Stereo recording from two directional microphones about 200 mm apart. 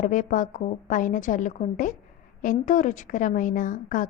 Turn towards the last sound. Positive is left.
turn(degrees=40)  # may be behind; listen again after turning